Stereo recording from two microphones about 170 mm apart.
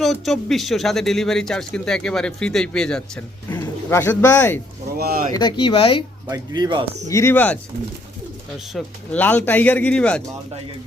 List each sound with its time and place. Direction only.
0.0 s speech: centre (ahead or behind)
4.9 s speech: 60° right (ahead or behind)
5.3 s speech: 30° left (ahead or behind)
6.2 s speech: 20° right (ahead or behind)
7.1 s a man's voice: 15° left (ahead or behind)
8.7 s a man's voice: 5° left (ahead or behind)